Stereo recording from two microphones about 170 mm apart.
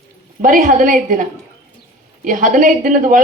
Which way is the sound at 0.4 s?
50° right (ahead or behind).